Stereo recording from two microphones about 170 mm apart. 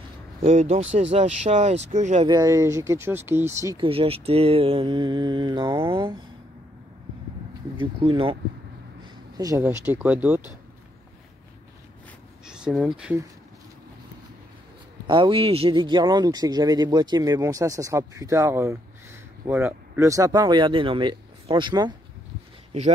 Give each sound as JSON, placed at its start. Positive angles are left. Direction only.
{"t": 0.5, "sound": "speech", "side_deg": -40}
{"t": 2.2, "sound": "speech", "side_deg": -20}
{"t": 3.8, "sound": "speech", "side_deg": -30}
{"t": 7.7, "sound": "speech", "side_deg": -30}
{"t": 9.4, "sound": "speech", "side_deg": -20}
{"t": 12.4, "sound": "speech", "side_deg": -5}
{"t": 15.0, "sound": "speech", "side_deg": -30}